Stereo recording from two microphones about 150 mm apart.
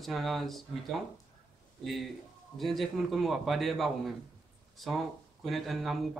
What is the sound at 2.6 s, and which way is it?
Speech, centre (ahead or behind).